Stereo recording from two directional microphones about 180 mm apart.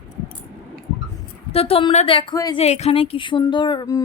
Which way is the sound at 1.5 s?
35° left (ahead or behind).